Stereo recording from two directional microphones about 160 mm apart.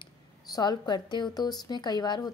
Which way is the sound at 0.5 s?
25° left (ahead or behind).